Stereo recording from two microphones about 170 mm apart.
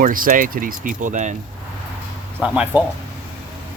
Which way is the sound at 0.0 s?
55° right (ahead or behind).